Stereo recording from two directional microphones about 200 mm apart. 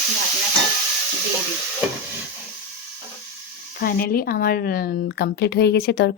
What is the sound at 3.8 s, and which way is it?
Speech, 45° left (ahead or behind).